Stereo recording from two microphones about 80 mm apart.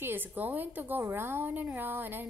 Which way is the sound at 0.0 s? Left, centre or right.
Right.